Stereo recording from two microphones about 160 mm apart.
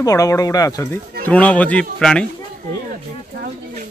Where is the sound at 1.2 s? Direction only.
10° left (ahead or behind).